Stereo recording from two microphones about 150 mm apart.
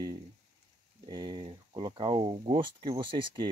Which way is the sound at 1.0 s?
30° right (ahead or behind).